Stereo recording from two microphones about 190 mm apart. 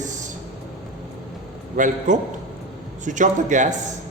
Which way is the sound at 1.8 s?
40° right (ahead or behind).